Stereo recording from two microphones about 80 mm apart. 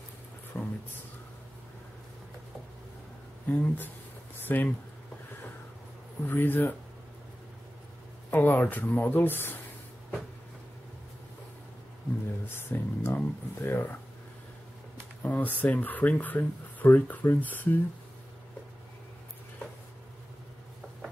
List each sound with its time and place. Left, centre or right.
0.5 s a sound: left
3.4 s speech: centre
6.2 s speech: left
8.3 s speech: left
12.5 s speech: left
15.2 s speech: centre